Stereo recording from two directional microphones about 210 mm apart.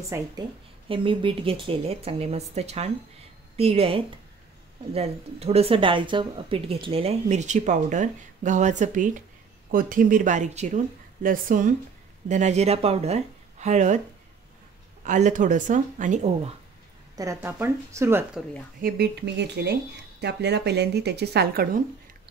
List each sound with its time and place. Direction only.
0.1 s speech: 15° right (ahead or behind)
0.8 s speech: 25° right (ahead or behind)
15.0 s speech: 35° right (ahead or behind)
17.1 s speech: 15° right (ahead or behind)
18.8 s speech: 45° right (ahead or behind)